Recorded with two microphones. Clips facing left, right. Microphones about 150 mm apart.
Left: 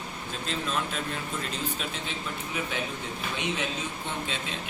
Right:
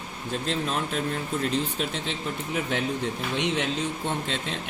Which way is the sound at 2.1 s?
65° right (ahead or behind).